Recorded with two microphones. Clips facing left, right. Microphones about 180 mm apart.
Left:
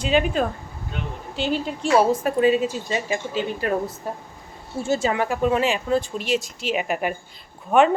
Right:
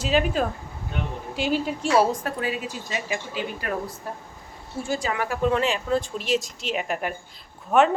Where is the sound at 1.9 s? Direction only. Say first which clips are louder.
Left 3 dB; 20° left (ahead or behind).